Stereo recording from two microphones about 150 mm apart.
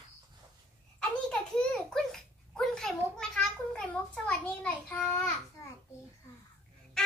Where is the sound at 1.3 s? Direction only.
5° left (ahead or behind).